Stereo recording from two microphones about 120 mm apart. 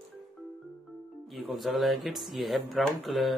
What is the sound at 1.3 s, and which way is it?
Speech, centre (ahead or behind).